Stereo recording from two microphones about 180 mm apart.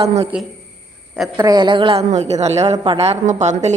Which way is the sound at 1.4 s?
20° right (ahead or behind).